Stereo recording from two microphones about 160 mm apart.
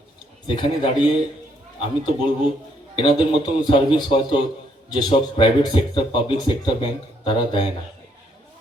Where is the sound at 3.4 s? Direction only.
30° left (ahead or behind).